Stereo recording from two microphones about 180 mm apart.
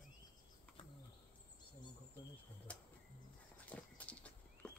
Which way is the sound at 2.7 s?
5° left (ahead or behind).